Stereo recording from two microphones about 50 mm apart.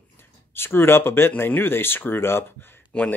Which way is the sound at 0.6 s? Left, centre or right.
Left.